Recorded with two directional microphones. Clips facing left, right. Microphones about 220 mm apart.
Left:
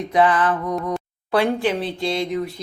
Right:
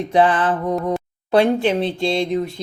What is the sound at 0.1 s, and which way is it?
Speech, 30° right (ahead or behind).